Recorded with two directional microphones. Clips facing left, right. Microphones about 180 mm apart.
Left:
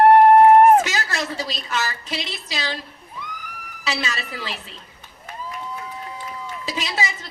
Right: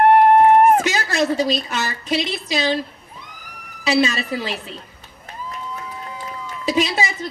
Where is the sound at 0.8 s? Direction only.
15° right (ahead or behind).